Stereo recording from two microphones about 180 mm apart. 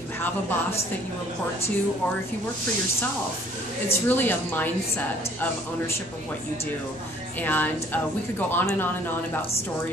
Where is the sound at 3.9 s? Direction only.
10° left (ahead or behind).